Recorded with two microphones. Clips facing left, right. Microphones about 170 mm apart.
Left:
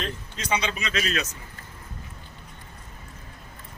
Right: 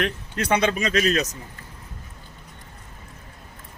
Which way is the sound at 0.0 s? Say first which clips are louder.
Right 7 dB; 60° right (ahead or behind).